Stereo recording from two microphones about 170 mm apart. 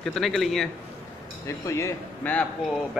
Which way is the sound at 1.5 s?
15° left (ahead or behind).